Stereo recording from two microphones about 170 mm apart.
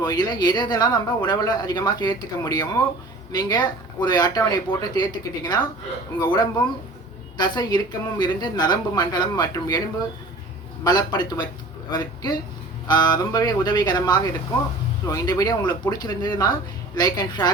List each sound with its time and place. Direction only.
0.0 s speech: 25° left (ahead or behind)
10.8 s speech: 25° left (ahead or behind)